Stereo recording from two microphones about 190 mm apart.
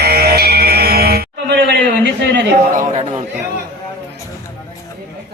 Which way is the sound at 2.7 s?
35° right (ahead or behind).